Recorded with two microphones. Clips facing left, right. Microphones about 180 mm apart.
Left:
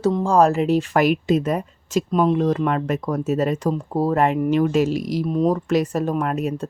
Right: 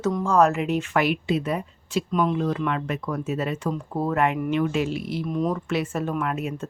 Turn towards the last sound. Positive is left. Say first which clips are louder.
# left 4 dB
turn(degrees=40)  # may be behind; listen again after turning